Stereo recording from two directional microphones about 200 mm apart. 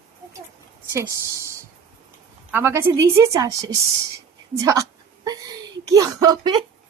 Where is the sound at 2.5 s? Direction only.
10° right (ahead or behind).